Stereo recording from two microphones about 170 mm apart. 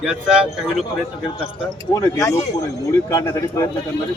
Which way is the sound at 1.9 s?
20° left (ahead or behind).